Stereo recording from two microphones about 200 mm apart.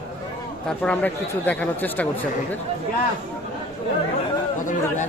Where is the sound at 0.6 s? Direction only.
5° left (ahead or behind).